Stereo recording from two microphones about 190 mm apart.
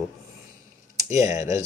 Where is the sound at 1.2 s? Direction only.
15° right (ahead or behind).